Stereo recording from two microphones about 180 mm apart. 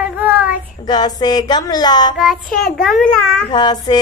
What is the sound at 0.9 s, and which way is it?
Child singing, 20° left (ahead or behind).